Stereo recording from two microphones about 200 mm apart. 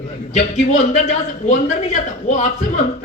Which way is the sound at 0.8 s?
35° left (ahead or behind).